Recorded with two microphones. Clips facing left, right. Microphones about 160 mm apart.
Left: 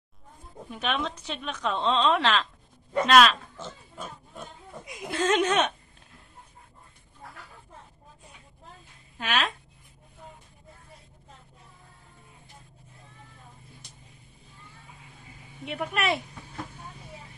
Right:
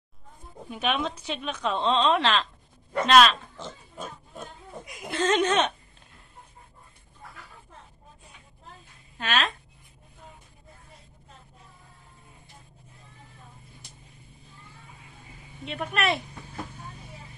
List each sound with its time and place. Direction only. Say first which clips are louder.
0.7 s a woman's voice: right 2 dB; 5° right (ahead or behind)
3.5 s pig: right 1 dB; 15° right (ahead or behind)
4.8 s a woman's voice: even; centre (ahead or behind)
9.2 s speech: right 1 dB; 5° left (ahead or behind)
15.6 s speech: right 1 dB; 10° left (ahead or behind)